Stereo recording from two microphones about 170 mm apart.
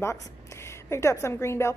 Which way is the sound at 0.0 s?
15° left (ahead or behind).